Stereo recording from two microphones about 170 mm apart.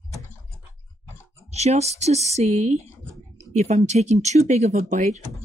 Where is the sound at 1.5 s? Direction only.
40° right (ahead or behind).